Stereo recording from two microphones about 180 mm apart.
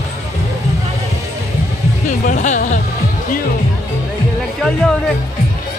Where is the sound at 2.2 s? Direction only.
45° left (ahead or behind).